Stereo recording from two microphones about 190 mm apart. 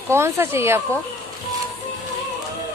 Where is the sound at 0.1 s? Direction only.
15° right (ahead or behind).